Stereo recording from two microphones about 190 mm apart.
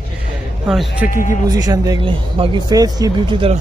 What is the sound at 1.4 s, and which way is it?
Speech, 20° right (ahead or behind).